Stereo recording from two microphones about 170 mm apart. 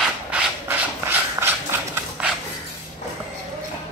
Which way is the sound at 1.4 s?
15° right (ahead or behind).